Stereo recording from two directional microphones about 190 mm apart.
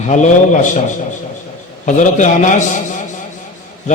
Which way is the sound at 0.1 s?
40° left (ahead or behind).